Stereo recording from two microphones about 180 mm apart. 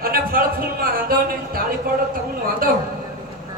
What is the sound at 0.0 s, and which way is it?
Music, 55° right (ahead or behind).